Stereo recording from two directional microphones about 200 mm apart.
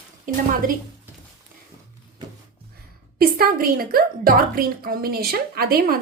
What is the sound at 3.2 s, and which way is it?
A woman's voice, 45° right (ahead or behind).